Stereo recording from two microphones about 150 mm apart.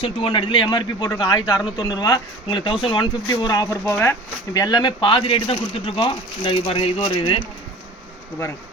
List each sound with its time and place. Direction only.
0.0 s a man's voice: 35° left (ahead or behind)
3.8 s speech: 15° left (ahead or behind)
4.5 s speech: 25° left (ahead or behind)